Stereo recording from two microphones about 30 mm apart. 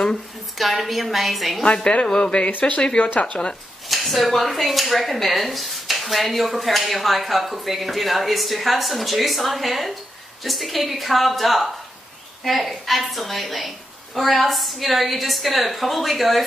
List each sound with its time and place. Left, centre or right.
0.6 s speech: centre
2.0 s speech: left
2.6 s speech: left
3.9 s a woman's voice: centre